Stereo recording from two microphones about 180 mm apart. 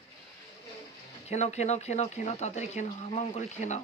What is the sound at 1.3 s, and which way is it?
Speech, 40° left (ahead or behind).